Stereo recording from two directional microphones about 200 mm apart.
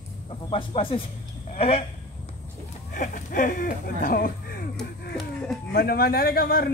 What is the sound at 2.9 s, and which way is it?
A man's voice, 40° left (ahead or behind).